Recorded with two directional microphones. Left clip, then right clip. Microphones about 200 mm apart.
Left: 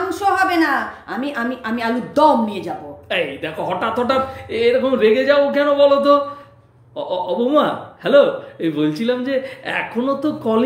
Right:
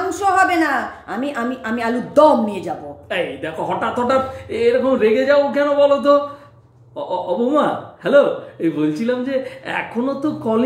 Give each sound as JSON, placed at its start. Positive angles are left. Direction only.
{"t": 0.1, "sound": "a woman's voice", "side_deg": -15}
{"t": 3.1, "sound": "speech", "side_deg": 10}